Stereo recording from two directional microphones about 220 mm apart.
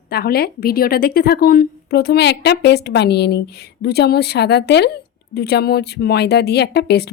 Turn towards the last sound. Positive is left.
turn(degrees=50)  # may be behind; listen again after turning